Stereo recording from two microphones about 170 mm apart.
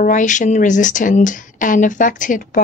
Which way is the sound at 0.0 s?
50° left (ahead or behind).